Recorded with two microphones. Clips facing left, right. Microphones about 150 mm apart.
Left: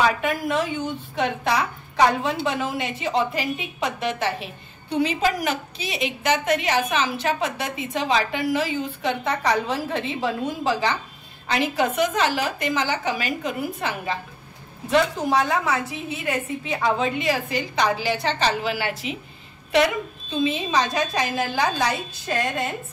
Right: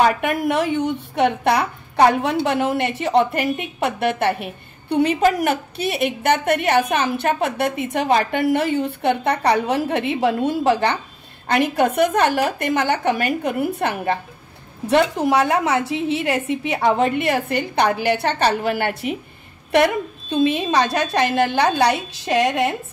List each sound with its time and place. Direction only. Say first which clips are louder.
0.2 s a child's voice: right 4 dB; 65° right (ahead or behind)